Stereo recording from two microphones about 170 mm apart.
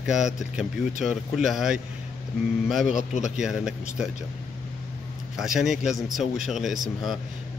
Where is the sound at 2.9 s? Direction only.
45° left (ahead or behind).